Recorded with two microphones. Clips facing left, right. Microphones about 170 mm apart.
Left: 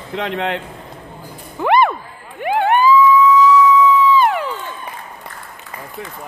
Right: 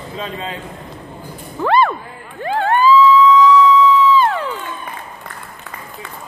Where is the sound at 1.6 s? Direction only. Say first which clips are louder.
Left 1 dB; 15° left (ahead or behind).